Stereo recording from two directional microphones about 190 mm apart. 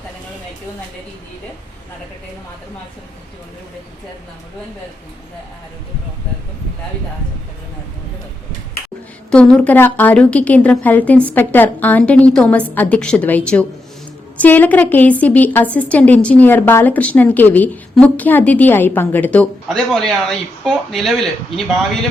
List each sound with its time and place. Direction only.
9.3 s a woman's voice: 5° left (ahead or behind)